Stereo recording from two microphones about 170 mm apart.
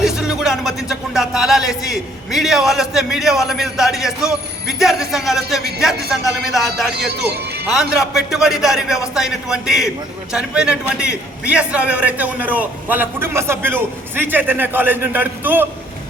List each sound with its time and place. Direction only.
0.0 s speech: 5° right (ahead or behind)
7.1 s a man's voice: 70° right (ahead or behind)
7.7 s a man's voice: 5° right (ahead or behind)